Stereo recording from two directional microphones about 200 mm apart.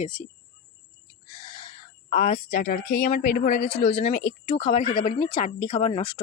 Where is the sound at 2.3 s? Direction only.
30° left (ahead or behind).